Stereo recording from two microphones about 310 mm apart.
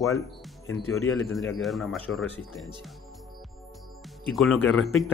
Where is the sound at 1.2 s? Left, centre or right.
Centre.